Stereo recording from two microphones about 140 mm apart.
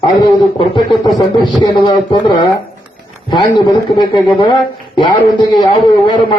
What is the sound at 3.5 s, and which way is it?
A man's voice, 35° left (ahead or behind).